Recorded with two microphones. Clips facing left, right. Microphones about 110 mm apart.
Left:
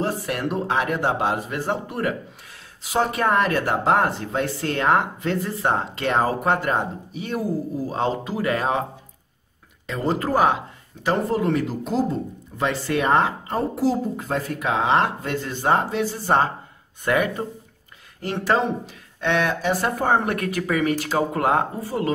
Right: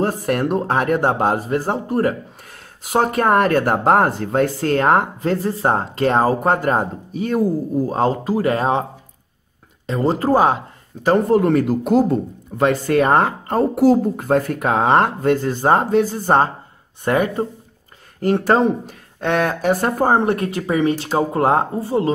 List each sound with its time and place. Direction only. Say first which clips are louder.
0.0 s speech: right 6 dB; 40° right (ahead or behind)
2.8 s speech: right 4 dB; 50° right (ahead or behind); by 8.8 s 30° right (ahead or behind)
9.8 s speech: right 6 dB; 35° right (ahead or behind)
11.1 s speech: right 7 dB; 50° right (ahead or behind)
12.5 s speech: right 7 dB; 50° right (ahead or behind)
20.2 s speech: right 5 dB; 25° right (ahead or behind)